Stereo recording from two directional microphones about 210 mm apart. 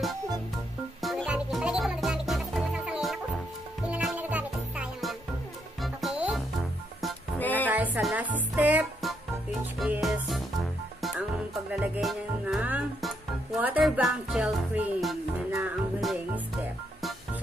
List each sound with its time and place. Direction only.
1.0 s music: centre (ahead or behind)
7.6 s music: 10° right (ahead or behind)